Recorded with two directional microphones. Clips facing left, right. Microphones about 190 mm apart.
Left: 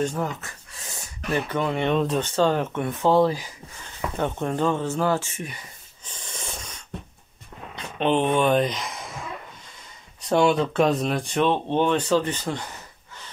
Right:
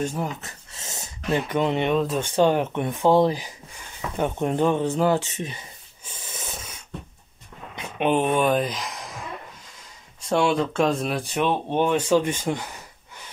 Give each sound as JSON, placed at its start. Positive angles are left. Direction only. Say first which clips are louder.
{"t": 0.0, "sound": "speech", "louder": "left 1 dB", "side_deg": -10}
{"t": 0.4, "sound": "a sound", "louder": "even", "side_deg": -20}
{"t": 2.0, "sound": "speech", "louder": "right 1 dB", "side_deg": -5}
{"t": 6.0, "sound": "a sound", "louder": "even", "side_deg": -5}
{"t": 7.7, "sound": "speech", "louder": "even", "side_deg": -10}
{"t": 10.2, "sound": "speech", "louder": "left 2 dB", "side_deg": 0}